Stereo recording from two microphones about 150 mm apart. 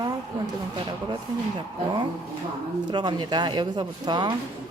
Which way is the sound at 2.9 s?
30° right (ahead or behind).